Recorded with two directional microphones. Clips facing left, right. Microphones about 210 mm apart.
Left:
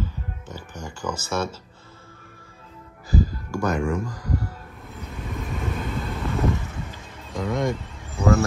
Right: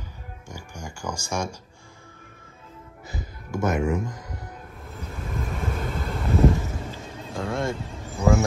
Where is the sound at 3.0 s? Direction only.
20° right (ahead or behind).